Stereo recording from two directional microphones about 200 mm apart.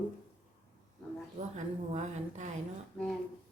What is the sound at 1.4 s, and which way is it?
A woman's voice, 35° right (ahead or behind).